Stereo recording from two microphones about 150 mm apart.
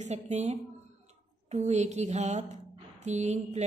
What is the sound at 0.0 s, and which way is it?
Speech, 50° right (ahead or behind).